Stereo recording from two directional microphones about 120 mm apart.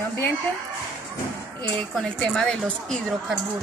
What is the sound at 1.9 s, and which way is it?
A woman's voice, 5° left (ahead or behind).